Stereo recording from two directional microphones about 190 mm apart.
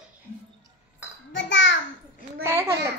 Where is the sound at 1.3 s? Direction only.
75° left (ahead or behind).